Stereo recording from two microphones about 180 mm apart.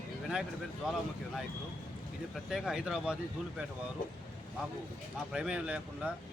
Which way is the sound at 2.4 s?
5° right (ahead or behind).